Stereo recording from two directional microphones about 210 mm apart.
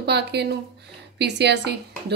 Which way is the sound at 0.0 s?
50° right (ahead or behind).